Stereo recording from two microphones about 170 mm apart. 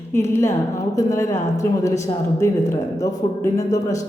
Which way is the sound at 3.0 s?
20° left (ahead or behind).